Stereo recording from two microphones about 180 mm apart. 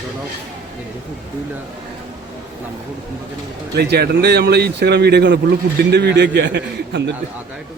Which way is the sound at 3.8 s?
65° right (ahead or behind).